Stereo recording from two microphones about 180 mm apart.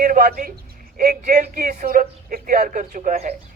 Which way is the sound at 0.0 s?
50° right (ahead or behind).